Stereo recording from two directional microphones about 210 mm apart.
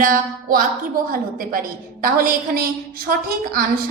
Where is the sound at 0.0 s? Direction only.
40° right (ahead or behind).